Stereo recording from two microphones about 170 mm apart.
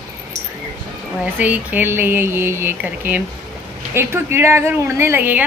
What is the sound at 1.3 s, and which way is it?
Speech, 10° right (ahead or behind).